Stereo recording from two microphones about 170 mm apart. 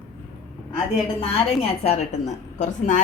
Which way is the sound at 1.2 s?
35° left (ahead or behind).